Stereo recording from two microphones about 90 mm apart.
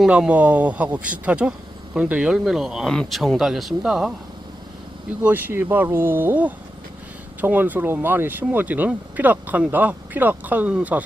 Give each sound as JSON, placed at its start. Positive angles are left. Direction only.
{"t": 0.1, "sound": "speech", "side_deg": -15}
{"t": 5.2, "sound": "speech", "side_deg": -20}